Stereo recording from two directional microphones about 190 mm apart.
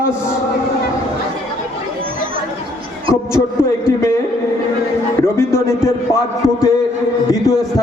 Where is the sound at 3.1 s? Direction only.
15° left (ahead or behind).